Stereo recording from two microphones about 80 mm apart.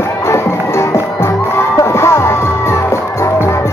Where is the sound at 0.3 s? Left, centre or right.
Left.